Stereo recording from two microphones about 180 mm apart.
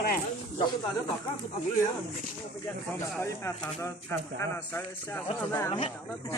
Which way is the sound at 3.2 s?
15° left (ahead or behind).